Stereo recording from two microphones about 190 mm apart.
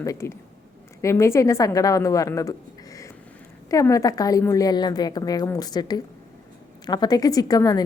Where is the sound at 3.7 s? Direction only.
15° left (ahead or behind).